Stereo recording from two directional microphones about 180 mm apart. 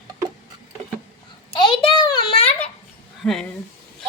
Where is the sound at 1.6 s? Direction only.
25° left (ahead or behind).